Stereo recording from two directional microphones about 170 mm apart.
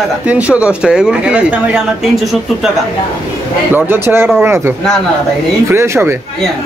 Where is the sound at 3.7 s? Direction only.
10° right (ahead or behind).